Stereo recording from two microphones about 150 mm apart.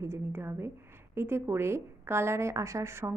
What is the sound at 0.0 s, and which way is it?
A woman's voice, 15° right (ahead or behind).